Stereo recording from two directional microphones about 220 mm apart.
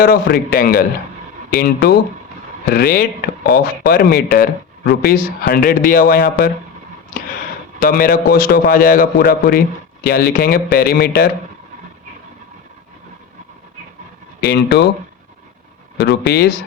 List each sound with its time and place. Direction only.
0.0 s speech: 45° left (ahead or behind)
7.8 s speech: 40° left (ahead or behind)
14.4 s speech: 50° left (ahead or behind)
16.0 s speech: 50° left (ahead or behind)